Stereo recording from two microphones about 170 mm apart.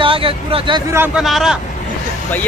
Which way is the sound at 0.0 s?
30° right (ahead or behind).